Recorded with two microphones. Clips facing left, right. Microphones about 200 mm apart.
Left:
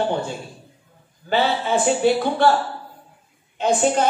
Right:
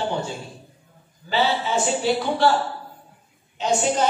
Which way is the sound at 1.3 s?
55° left (ahead or behind).